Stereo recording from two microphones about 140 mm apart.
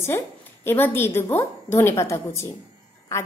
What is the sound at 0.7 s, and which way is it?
A woman's voice, 15° left (ahead or behind).